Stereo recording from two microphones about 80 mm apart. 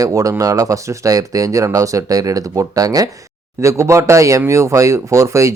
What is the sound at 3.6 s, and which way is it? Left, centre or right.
Speech, right.